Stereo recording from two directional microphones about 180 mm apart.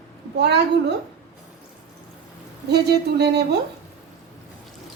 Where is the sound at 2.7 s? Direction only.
65° right (ahead or behind).